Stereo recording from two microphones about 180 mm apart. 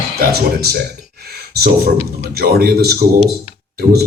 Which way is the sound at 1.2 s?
60° right (ahead or behind).